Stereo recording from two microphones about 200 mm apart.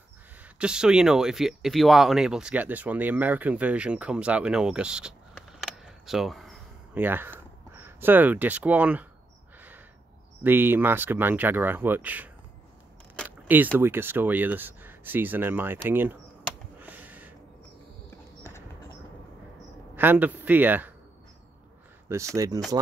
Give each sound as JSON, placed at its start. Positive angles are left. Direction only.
{"t": 0.6, "sound": "speech", "side_deg": -5}
{"t": 5.6, "sound": "a sound", "side_deg": 0}
{"t": 10.4, "sound": "speech", "side_deg": -10}
{"t": 13.5, "sound": "speech", "side_deg": -10}
{"t": 16.8, "sound": "a sound", "side_deg": -10}
{"t": 20.0, "sound": "speech", "side_deg": -10}
{"t": 22.1, "sound": "speech", "side_deg": -15}